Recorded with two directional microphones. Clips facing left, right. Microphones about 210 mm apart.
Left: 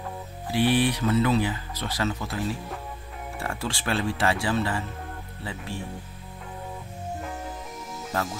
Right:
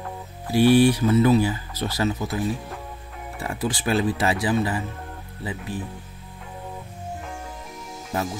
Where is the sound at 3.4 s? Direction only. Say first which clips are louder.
Right 5 dB; 20° right (ahead or behind).